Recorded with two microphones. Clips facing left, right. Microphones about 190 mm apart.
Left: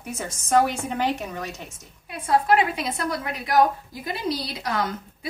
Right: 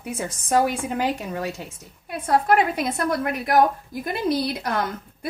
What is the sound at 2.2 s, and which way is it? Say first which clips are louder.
A woman's voice: right 1 dB; 50° right (ahead or behind).